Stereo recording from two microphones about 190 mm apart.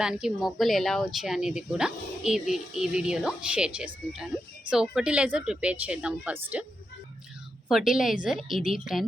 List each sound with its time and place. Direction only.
0.0 s speech: 5° right (ahead or behind)
7.7 s speech: centre (ahead or behind)